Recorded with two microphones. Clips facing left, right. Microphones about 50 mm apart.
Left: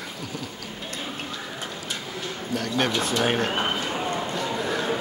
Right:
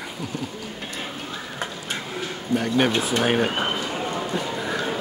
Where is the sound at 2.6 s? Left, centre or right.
Centre.